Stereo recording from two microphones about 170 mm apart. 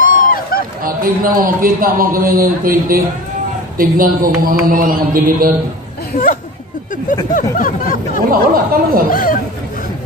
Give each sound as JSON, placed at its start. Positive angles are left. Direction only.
{"t": 0.0, "sound": "run", "side_deg": 55}
{"t": 0.8, "sound": "speech", "side_deg": -55}
{"t": 6.1, "sound": "speech", "side_deg": 55}
{"t": 7.5, "sound": "a sound", "side_deg": 55}
{"t": 8.3, "sound": "speech", "side_deg": -55}
{"t": 9.1, "sound": "speech", "side_deg": 55}